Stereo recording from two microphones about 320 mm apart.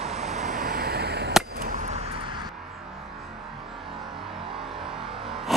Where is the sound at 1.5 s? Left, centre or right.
Right.